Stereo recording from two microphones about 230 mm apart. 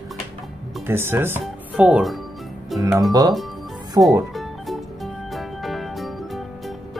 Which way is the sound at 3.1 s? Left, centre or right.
Centre.